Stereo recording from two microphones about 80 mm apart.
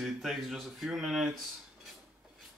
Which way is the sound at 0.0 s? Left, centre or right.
Centre.